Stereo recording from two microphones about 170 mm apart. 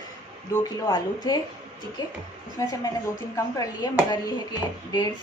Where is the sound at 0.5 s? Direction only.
25° left (ahead or behind).